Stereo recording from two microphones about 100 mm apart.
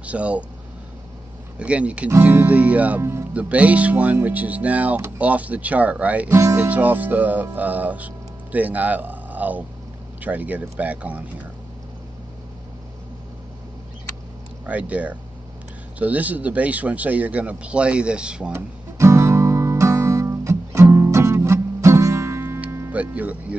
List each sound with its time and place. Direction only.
0.0 s speech: 15° right (ahead or behind)
1.6 s speech: 10° right (ahead or behind)
3.0 s speech: 25° right (ahead or behind)
3.3 s speech: 15° right (ahead or behind)
14.7 s speech: 15° right (ahead or behind)
18.5 s guitar: 30° right (ahead or behind)
22.4 s music: 20° right (ahead or behind)
22.9 s speech: 15° right (ahead or behind)